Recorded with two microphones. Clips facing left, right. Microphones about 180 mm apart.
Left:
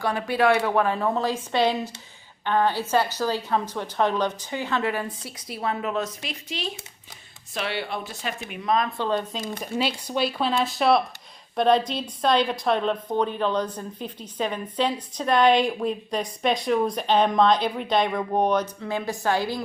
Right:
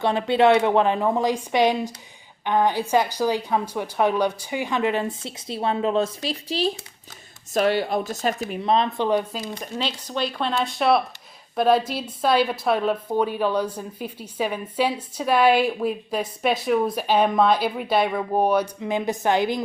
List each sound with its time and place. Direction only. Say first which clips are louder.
0.0 s a woman's voice: right 4 dB; 25° right (ahead or behind)
9.0 s a woman's voice: right 4 dB; 15° right (ahead or behind)
9.6 s a woman's voice: left 6 dB; 10° left (ahead or behind); by 19.6 s 20° right (ahead or behind)